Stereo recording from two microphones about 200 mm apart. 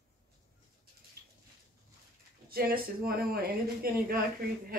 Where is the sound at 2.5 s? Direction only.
50° right (ahead or behind).